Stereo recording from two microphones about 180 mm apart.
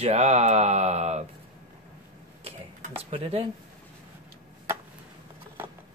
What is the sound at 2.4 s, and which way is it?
Typing, 30° right (ahead or behind).